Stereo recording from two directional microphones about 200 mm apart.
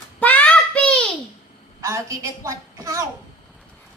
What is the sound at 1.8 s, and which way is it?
A woman's voice, 15° right (ahead or behind).